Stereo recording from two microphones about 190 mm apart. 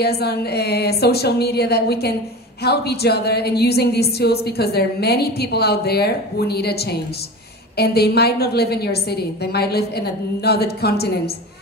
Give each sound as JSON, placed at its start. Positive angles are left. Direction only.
{"t": 0.0, "sound": "a woman's voice", "side_deg": 55}